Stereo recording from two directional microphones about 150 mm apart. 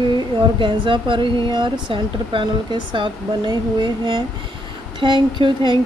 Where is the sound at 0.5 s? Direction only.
35° right (ahead or behind).